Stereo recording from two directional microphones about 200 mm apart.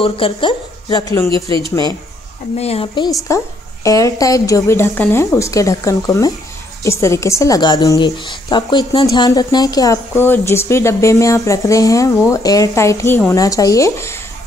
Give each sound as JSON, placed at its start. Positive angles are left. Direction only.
{"t": 0.0, "sound": "speech", "side_deg": 25}
{"t": 2.5, "sound": "a woman's voice", "side_deg": 30}
{"t": 3.3, "sound": "a woman's voice", "side_deg": 15}